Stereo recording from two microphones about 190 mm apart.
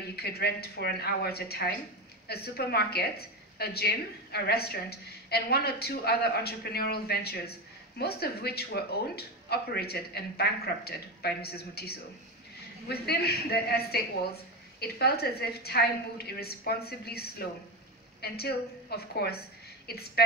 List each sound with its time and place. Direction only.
0.1 s a woman's voice: 55° left (ahead or behind)